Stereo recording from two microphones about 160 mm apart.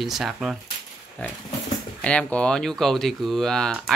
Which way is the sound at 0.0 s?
Centre (ahead or behind).